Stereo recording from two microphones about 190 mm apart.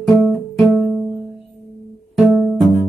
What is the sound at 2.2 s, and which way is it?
Music, centre (ahead or behind).